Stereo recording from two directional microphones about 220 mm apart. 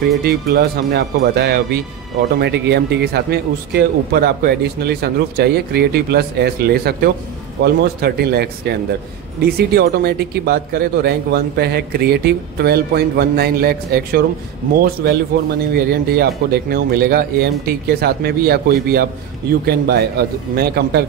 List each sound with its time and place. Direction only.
0.2 s speech: 45° right (ahead or behind)
15.3 s speech: 45° right (ahead or behind)